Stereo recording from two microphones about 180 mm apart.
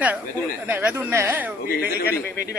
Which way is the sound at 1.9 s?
60° left (ahead or behind).